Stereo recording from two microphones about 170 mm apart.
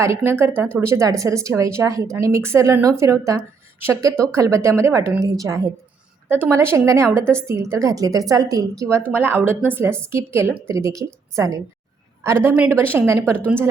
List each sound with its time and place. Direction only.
0.0 s a woman's voice: 15° right (ahead or behind)